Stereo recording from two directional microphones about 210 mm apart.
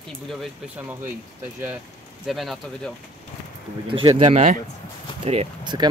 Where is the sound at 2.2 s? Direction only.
Centre (ahead or behind).